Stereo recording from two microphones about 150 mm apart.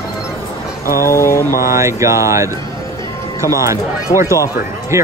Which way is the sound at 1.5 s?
75° left (ahead or behind).